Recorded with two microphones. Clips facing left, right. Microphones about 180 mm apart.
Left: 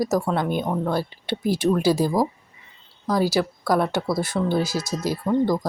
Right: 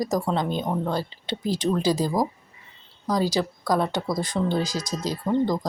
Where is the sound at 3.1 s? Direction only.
10° left (ahead or behind).